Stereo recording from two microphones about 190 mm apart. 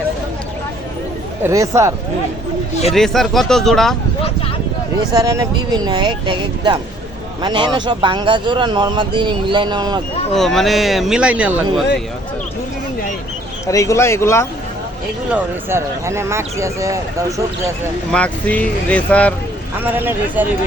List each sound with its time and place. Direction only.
1.5 s speech: 15° right (ahead or behind)
2.9 s speech: centre (ahead or behind)
5.1 s speech: 20° right (ahead or behind)
10.3 s speech: centre (ahead or behind)
13.7 s speech: 15° left (ahead or behind)
15.3 s speech: 15° right (ahead or behind)
18.1 s speech: 5° left (ahead or behind)
19.8 s speech: 10° right (ahead or behind)